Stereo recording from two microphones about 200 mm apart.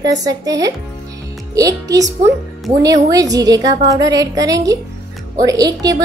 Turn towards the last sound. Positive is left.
turn(degrees=-20)  # may be behind; listen again after turning